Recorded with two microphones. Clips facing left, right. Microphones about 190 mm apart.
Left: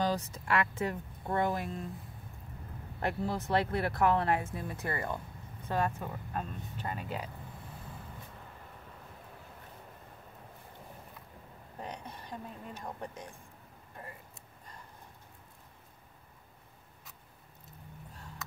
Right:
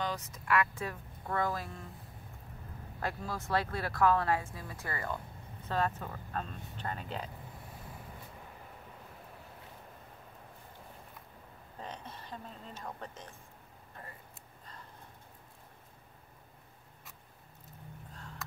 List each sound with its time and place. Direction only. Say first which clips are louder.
0.0 s speech: left 5 dB; 30° left (ahead or behind)
3.0 s speech: left 5 dB; 20° left (ahead or behind)
5.7 s speech: left 1 dB; 10° left (ahead or behind)
11.8 s a woman's voice: left 2 dB; 15° left (ahead or behind)